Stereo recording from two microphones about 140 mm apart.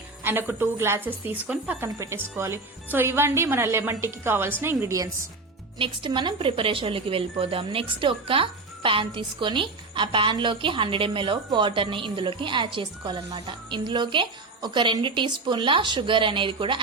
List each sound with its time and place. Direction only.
0.3 s a woman's voice: 15° right (ahead or behind)
5.8 s a woman's voice: 35° right (ahead or behind)